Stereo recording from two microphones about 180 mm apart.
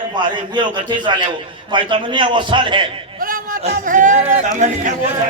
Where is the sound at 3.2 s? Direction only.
50° right (ahead or behind).